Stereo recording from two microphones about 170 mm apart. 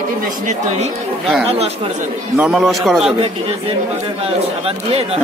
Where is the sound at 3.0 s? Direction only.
35° right (ahead or behind).